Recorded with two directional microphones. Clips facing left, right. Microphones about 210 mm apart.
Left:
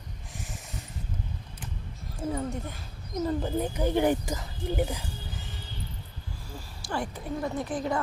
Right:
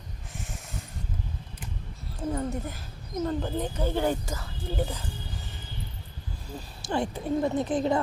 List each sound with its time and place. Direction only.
0.3 s snort: centre (ahead or behind)
2.1 s speech: centre (ahead or behind)
3.2 s speech: 10° left (ahead or behind)
6.5 s speech: 20° right (ahead or behind)